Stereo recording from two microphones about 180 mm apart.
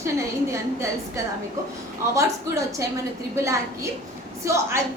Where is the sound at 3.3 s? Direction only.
15° right (ahead or behind).